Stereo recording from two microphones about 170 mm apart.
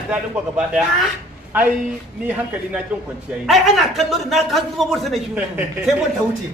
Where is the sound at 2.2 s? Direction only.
10° right (ahead or behind).